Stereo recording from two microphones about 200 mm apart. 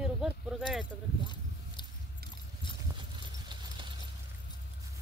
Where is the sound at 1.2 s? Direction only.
20° left (ahead or behind).